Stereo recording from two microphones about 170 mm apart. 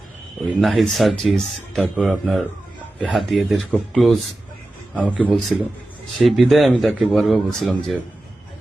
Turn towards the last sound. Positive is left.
turn(degrees=0)  # may be behind; listen again after turning